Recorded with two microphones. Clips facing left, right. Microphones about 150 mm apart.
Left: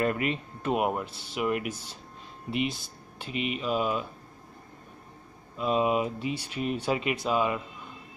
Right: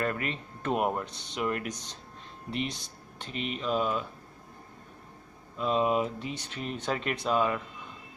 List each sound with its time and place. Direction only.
0.0 s speech: 15° left (ahead or behind)
5.6 s speech: 10° left (ahead or behind)